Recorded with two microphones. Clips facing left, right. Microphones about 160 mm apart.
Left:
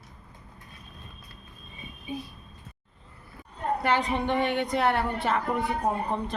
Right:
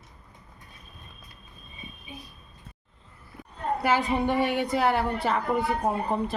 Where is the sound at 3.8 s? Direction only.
5° right (ahead or behind).